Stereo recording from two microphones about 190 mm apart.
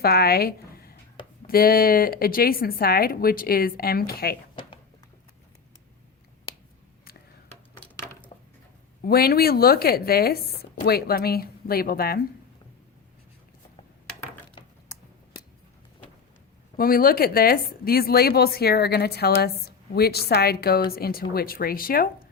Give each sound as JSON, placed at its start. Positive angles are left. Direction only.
{"t": 0.0, "sound": "speech", "side_deg": 55}
{"t": 8.3, "sound": "a sound", "side_deg": 30}
{"t": 9.0, "sound": "speech", "side_deg": 55}
{"t": 16.7, "sound": "a woman's voice", "side_deg": 50}